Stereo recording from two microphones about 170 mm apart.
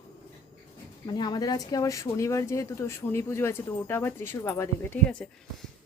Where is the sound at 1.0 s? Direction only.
25° left (ahead or behind).